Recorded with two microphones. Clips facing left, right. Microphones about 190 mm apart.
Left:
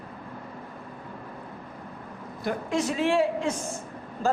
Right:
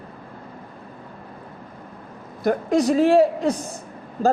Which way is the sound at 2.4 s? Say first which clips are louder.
Right 8 dB; 40° right (ahead or behind).